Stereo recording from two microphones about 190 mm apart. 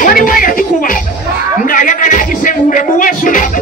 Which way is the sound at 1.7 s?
45° left (ahead or behind).